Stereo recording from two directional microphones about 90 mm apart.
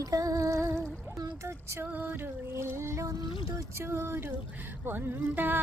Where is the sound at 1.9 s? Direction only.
20° right (ahead or behind).